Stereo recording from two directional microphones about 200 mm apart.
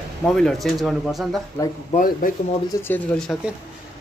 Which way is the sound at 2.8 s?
10° left (ahead or behind).